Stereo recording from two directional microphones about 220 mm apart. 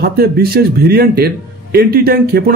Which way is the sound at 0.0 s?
45° right (ahead or behind).